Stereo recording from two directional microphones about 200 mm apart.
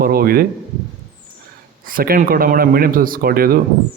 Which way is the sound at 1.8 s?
45° right (ahead or behind).